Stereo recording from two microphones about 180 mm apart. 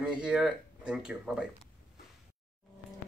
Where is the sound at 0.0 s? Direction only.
5° right (ahead or behind).